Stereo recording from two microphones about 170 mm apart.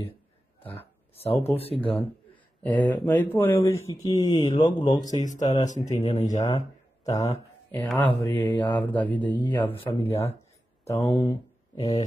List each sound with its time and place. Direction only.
1.1 s speech: 35° left (ahead or behind)
1.8 s a man's voice: 5° left (ahead or behind)
2.6 s mantra: 10° left (ahead or behind)
3.6 s speech: 15° left (ahead or behind)
5.2 s speech: 45° left (ahead or behind)
5.9 s speech: 20° left (ahead or behind)
6.1 s speech: 45° left (ahead or behind)
7.1 s speech: 20° left (ahead or behind)
7.7 s mantra: 10° left (ahead or behind)
10.9 s speech: 15° left (ahead or behind)